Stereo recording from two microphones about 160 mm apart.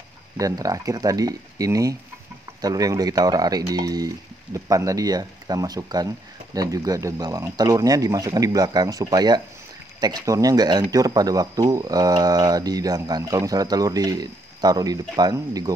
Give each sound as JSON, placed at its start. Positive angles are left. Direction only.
{"t": 0.4, "sound": "speech", "side_deg": -20}